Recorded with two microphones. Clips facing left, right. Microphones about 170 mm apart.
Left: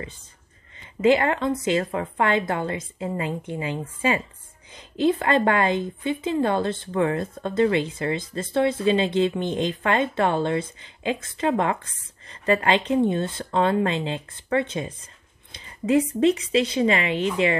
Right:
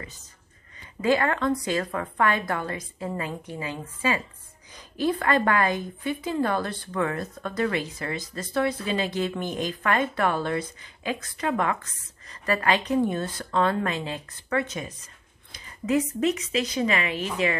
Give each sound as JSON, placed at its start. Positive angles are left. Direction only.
{"t": 1.0, "sound": "speech", "side_deg": 20}